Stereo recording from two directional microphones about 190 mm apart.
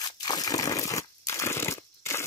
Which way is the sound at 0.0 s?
20° left (ahead or behind).